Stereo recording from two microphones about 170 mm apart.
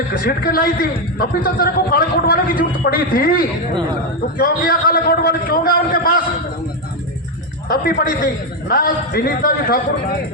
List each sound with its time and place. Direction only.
0.3 s a man's voice: 60° left (ahead or behind)
7.7 s a man's voice: 60° left (ahead or behind)